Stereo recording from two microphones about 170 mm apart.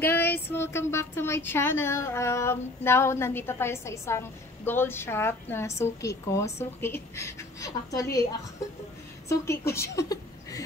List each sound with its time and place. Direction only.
0.0 s speech: 10° left (ahead or behind)
9.3 s a woman's voice: 15° left (ahead or behind)